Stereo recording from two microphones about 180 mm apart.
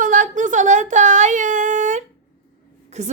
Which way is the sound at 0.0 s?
45° right (ahead or behind).